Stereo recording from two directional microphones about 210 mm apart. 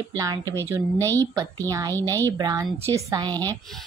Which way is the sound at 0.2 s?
15° right (ahead or behind).